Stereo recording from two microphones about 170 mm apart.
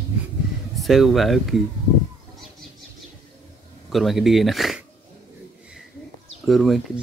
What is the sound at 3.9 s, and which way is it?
Speech, centre (ahead or behind).